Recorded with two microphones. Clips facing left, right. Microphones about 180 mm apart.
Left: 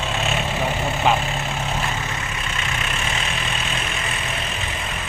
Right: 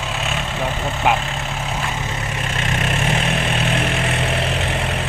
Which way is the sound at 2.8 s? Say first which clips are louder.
Right 7 dB; 55° right (ahead or behind).